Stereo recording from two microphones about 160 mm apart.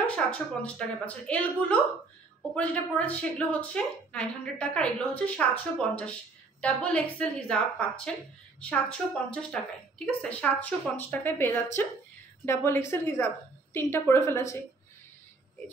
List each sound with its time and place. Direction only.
0.0 s a woman's voice: 10° left (ahead or behind)
8.5 s a woman's voice: 5° left (ahead or behind)